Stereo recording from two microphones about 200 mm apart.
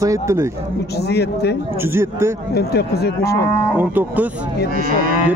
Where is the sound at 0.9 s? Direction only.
55° left (ahead or behind).